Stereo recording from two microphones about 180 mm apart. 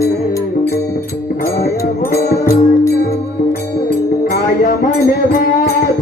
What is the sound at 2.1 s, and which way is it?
Music, 15° left (ahead or behind).